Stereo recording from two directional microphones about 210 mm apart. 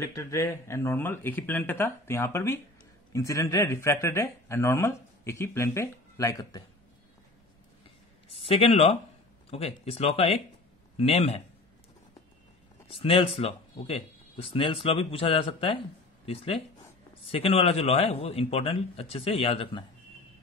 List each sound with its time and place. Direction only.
0.0 s speech: 15° left (ahead or behind)
8.4 s speech: 25° left (ahead or behind)
12.9 s speech: 25° left (ahead or behind)